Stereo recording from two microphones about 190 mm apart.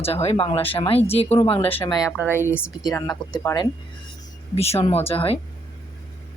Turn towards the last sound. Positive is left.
turn(degrees=30)  # may be behind; listen again after turning